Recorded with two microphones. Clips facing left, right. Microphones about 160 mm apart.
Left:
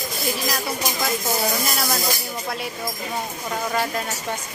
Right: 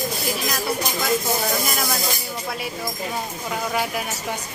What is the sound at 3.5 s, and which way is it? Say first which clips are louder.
Speech: even; 10° right (ahead or behind).